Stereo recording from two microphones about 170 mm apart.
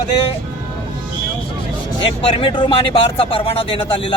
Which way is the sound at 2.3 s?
30° left (ahead or behind).